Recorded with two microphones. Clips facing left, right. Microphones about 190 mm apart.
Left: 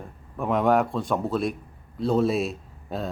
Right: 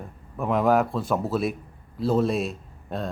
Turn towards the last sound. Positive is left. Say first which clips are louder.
# even
turn(degrees=0)  # may be behind; listen again after turning